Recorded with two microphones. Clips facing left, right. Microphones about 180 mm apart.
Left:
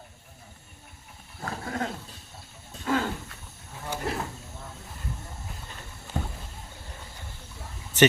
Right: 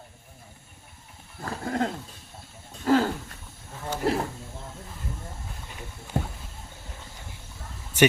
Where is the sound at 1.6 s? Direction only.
35° right (ahead or behind).